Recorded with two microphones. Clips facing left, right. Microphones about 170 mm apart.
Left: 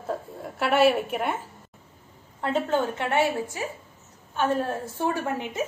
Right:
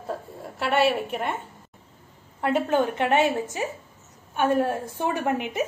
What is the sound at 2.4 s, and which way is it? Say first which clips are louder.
A woman's voice: right 2 dB; 10° right (ahead or behind).